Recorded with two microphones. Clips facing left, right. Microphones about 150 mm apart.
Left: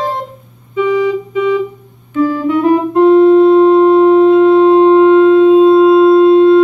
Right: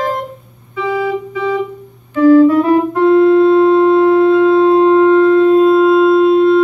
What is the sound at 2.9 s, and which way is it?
Music, 20° left (ahead or behind).